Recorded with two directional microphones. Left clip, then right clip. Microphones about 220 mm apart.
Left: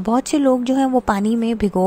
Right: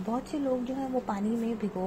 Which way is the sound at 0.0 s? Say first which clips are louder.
Left 15 dB; 45° left (ahead or behind).